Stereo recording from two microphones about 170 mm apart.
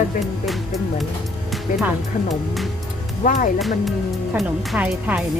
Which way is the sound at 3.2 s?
50° left (ahead or behind).